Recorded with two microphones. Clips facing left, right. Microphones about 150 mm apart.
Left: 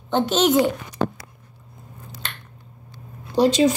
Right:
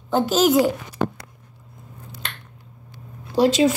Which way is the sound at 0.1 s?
5° right (ahead or behind).